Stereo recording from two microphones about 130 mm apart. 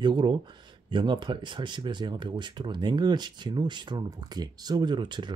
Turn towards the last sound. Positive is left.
turn(degrees=-35)  # may be behind; listen again after turning